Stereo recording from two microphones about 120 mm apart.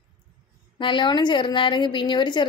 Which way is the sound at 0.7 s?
40° left (ahead or behind).